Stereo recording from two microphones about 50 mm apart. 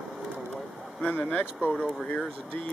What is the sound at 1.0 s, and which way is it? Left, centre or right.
Speech, left.